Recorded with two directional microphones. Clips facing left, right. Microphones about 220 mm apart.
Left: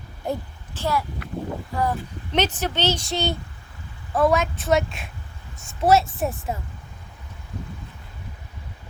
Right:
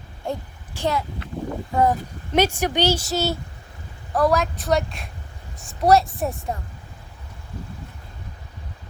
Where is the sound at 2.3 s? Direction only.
10° right (ahead or behind).